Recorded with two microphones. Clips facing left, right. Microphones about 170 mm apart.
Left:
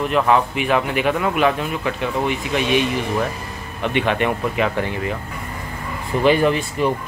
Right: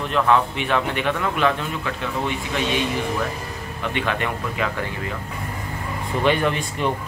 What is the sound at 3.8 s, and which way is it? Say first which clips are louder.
Speech: left 5 dB; 20° left (ahead or behind).